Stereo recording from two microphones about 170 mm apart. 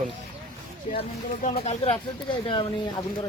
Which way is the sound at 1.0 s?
40° left (ahead or behind).